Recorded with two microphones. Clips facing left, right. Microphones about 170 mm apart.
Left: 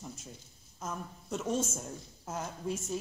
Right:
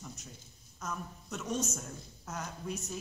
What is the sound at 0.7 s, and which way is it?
A woman's voice, 25° left (ahead or behind).